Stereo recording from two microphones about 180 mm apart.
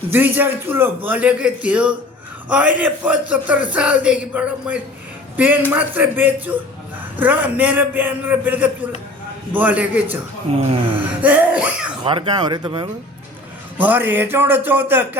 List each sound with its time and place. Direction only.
0.1 s a man's voice: 10° right (ahead or behind)
10.5 s speech: 35° right (ahead or behind)
11.2 s a man's voice: 10° right (ahead or behind)
12.0 s speech: 25° right (ahead or behind)
13.7 s a man's voice: 10° right (ahead or behind)